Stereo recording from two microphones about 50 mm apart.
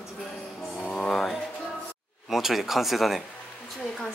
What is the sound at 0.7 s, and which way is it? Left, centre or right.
Music, left.